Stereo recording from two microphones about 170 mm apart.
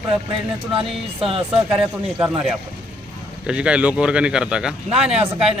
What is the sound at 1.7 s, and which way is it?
A man's voice, 5° right (ahead or behind).